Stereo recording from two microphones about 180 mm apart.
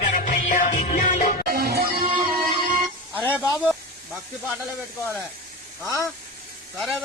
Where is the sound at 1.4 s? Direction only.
55° right (ahead or behind).